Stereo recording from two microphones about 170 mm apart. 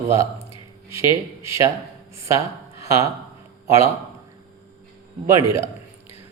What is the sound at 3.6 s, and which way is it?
Speech, 15° right (ahead or behind).